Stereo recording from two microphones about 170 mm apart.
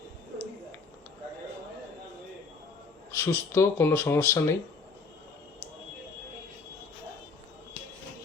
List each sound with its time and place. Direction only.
3.1 s speech: 15° left (ahead or behind)